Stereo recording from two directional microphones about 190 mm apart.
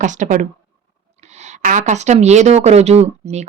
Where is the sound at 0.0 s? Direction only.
40° right (ahead or behind).